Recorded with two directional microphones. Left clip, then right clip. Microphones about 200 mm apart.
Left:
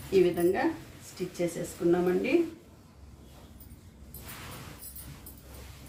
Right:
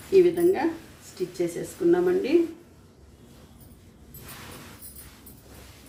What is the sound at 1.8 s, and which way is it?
Speech, 5° left (ahead or behind).